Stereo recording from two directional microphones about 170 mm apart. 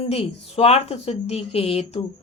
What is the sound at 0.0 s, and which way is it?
Speech, 35° left (ahead or behind).